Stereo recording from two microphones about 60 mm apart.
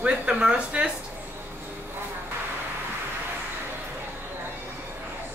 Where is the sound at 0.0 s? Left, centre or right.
Centre.